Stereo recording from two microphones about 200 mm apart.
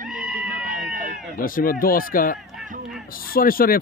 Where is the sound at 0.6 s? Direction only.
40° right (ahead or behind).